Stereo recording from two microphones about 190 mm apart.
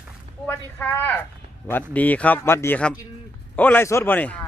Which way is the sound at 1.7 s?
10° left (ahead or behind).